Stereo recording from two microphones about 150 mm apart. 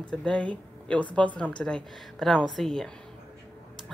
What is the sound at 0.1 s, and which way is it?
A woman's voice, 5° left (ahead or behind).